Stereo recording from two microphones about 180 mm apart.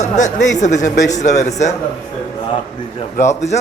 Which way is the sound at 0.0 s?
40° left (ahead or behind).